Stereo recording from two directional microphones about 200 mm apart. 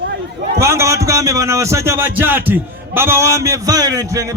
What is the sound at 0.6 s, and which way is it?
A man's voice, 15° right (ahead or behind).